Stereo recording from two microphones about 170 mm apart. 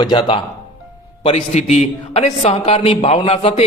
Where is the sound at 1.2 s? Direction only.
40° left (ahead or behind).